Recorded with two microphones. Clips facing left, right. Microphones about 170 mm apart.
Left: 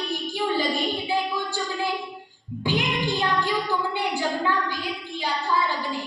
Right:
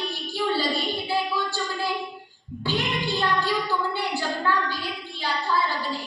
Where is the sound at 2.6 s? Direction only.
15° left (ahead or behind).